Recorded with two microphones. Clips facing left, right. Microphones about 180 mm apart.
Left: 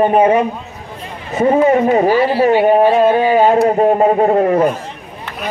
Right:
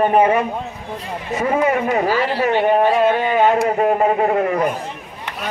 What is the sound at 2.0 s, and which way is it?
Speech, 15° left (ahead or behind).